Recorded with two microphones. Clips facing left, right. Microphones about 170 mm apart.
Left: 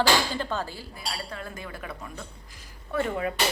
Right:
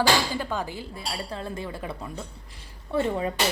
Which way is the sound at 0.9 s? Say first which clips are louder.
Right 1 dB; 30° right (ahead or behind).